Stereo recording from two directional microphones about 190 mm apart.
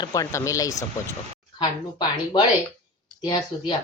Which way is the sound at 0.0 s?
20° left (ahead or behind).